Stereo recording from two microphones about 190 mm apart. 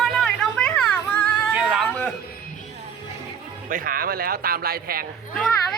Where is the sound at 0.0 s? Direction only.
Centre (ahead or behind).